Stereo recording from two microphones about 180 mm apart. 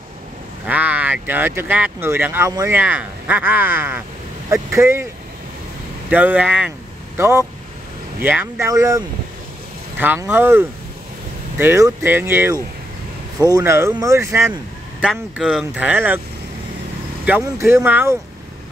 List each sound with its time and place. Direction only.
0.7 s speech: 10° right (ahead or behind)
6.0 s speech: 10° right (ahead or behind)
17.2 s speech: 10° right (ahead or behind)